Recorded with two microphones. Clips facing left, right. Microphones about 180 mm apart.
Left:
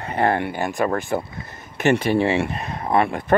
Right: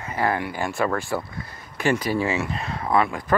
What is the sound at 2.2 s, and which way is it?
Speech, 60° left (ahead or behind).